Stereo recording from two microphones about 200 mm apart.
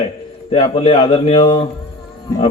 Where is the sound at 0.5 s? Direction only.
25° left (ahead or behind).